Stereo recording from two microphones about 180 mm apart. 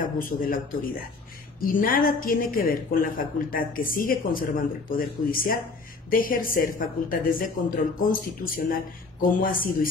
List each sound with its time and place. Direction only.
0.0 s speech: 50° left (ahead or behind)
1.6 s speech: 50° left (ahead or behind)